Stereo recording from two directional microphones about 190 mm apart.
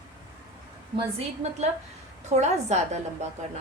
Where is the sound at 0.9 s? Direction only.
35° right (ahead or behind).